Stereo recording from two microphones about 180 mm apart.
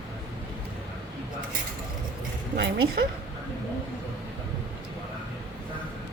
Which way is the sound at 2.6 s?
65° right (ahead or behind).